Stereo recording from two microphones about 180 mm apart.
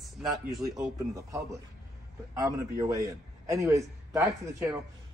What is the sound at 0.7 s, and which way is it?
A man's voice, 15° right (ahead or behind).